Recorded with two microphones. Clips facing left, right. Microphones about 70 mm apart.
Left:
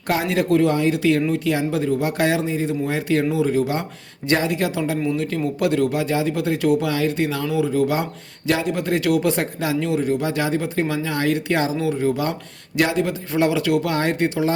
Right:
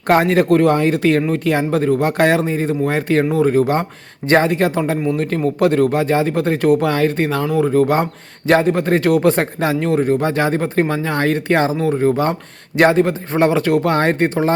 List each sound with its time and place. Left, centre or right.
0.1 s a man's voice: right